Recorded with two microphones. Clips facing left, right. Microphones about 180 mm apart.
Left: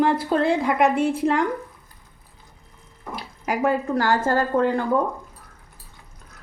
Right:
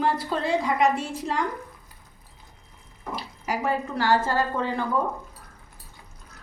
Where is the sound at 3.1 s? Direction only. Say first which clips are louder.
Left 3 dB; 55° left (ahead or behind).